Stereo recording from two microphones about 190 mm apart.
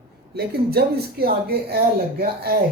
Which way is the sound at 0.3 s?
55° right (ahead or behind).